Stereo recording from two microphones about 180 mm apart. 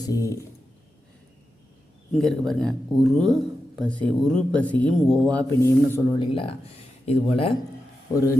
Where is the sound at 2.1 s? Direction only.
Centre (ahead or behind).